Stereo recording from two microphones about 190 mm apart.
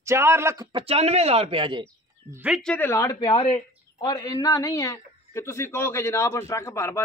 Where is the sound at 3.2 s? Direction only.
25° left (ahead or behind).